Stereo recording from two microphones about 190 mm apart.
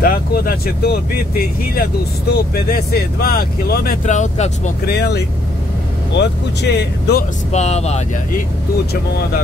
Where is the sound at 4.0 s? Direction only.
40° left (ahead or behind).